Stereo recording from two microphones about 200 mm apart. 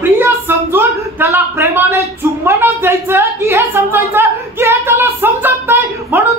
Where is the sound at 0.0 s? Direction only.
10° right (ahead or behind).